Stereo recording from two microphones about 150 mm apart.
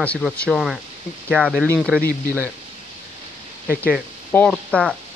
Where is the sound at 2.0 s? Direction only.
75° left (ahead or behind).